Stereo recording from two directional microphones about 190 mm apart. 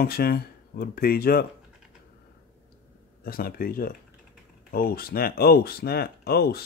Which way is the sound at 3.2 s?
50° left (ahead or behind).